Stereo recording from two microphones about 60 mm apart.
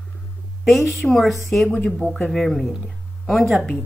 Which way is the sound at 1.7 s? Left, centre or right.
Left.